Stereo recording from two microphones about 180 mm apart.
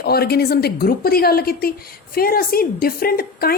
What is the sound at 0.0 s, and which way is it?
A woman's voice, 60° left (ahead or behind).